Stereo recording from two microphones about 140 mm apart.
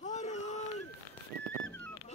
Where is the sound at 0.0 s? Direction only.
55° left (ahead or behind).